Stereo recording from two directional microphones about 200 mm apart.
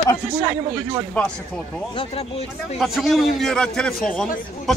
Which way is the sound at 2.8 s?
Centre (ahead or behind).